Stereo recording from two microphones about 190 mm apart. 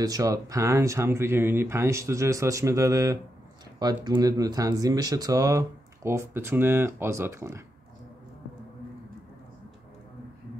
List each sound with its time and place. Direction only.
0.0 s speech: 20° right (ahead or behind)